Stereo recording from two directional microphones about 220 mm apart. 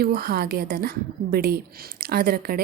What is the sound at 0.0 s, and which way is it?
A woman's voice, 45° right (ahead or behind).